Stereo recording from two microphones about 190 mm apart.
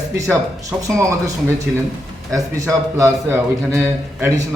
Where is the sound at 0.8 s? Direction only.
15° right (ahead or behind).